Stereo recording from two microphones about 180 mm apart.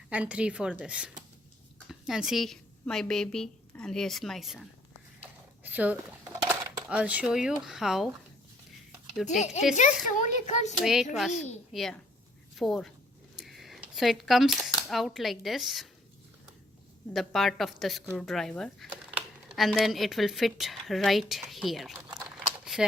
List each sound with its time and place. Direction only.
0.1 s a woman's voice: 5° right (ahead or behind)
5.6 s speech: 10° right (ahead or behind)
9.7 s speech: 45° left (ahead or behind)
10.8 s speech: centre (ahead or behind)
11.3 s a child's voice: 45° left (ahead or behind)
11.7 s speech: centre (ahead or behind)
13.3 s a sound: centre (ahead or behind)
14.8 s speech: centre (ahead or behind)
17.2 s speech: centre (ahead or behind)
22.6 s keys jangling: centre (ahead or behind)